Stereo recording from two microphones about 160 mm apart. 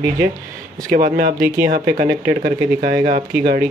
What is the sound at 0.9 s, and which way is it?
Speech, 60° right (ahead or behind).